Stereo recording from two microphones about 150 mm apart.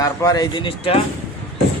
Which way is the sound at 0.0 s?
25° left (ahead or behind).